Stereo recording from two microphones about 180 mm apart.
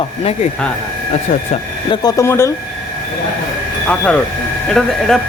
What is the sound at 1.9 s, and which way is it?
Speech, 20° left (ahead or behind).